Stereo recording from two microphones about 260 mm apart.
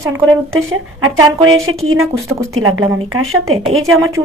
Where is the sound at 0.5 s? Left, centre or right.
Right.